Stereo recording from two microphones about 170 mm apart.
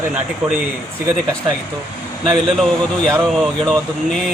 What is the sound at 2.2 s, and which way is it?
Speech, centre (ahead or behind).